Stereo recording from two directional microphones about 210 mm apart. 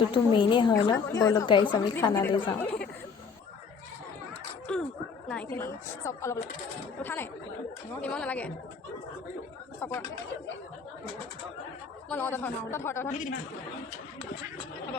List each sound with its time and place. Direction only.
0.1 s a woman's voice: 25° left (ahead or behind)
4.7 s a sound: 5° left (ahead or behind)
5.3 s a woman's voice: 10° left (ahead or behind)
9.8 s a woman's voice: 10° left (ahead or behind)
12.0 s a woman's voice: 10° left (ahead or behind)
13.1 s speech: 35° left (ahead or behind)